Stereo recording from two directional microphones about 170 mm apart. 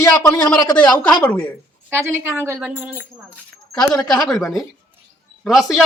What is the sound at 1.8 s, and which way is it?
A woman's voice, 15° right (ahead or behind).